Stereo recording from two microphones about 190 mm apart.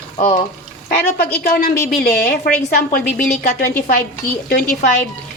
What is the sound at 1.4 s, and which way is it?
A woman's voice, 50° left (ahead or behind).